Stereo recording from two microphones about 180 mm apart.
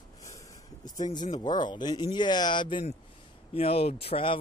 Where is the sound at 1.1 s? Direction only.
25° left (ahead or behind).